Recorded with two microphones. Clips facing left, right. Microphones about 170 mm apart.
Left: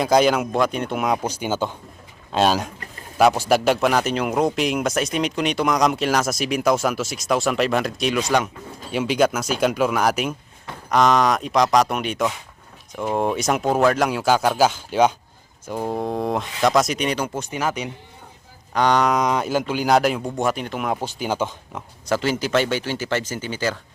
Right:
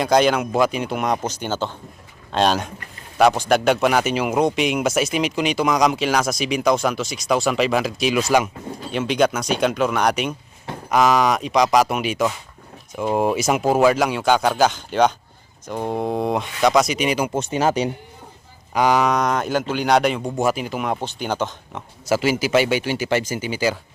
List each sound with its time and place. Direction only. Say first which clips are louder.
0.0 s a man's voice: even; centre (ahead or behind)
17.3 s speech: right 5 dB; 25° right (ahead or behind)
18.7 s a man's voice: right 1 dB; 5° right (ahead or behind)
22.1 s speech: right 2 dB; 10° right (ahead or behind)